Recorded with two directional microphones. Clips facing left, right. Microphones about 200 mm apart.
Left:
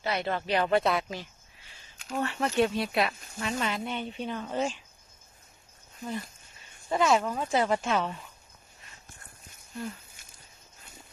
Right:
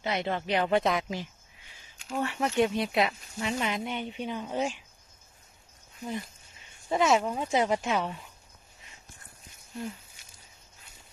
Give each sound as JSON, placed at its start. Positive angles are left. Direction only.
{"t": 0.0, "sound": "speech", "side_deg": -20}
{"t": 6.9, "sound": "speech", "side_deg": -20}